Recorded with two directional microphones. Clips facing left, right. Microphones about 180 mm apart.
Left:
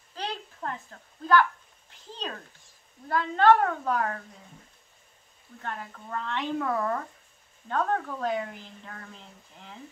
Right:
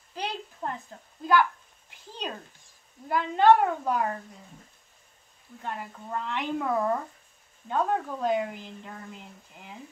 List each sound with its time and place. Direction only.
0.1 s a sound: 15° right (ahead or behind)
3.1 s speech: 15° right (ahead or behind)
5.6 s speech: 10° right (ahead or behind)